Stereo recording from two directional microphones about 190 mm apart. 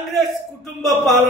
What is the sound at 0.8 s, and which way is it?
Speech, centre (ahead or behind).